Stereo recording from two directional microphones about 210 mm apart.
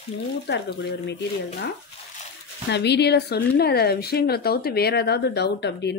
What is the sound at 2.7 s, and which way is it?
A woman's voice, 55° left (ahead or behind).